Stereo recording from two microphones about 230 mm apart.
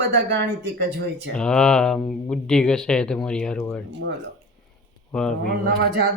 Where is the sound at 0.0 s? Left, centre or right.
Right.